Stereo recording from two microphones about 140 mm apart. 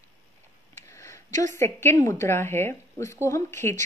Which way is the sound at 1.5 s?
15° left (ahead or behind).